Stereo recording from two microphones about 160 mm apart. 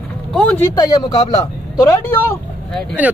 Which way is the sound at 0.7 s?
25° left (ahead or behind).